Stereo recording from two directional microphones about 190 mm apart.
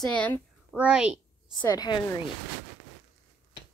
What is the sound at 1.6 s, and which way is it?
Speech, 20° left (ahead or behind).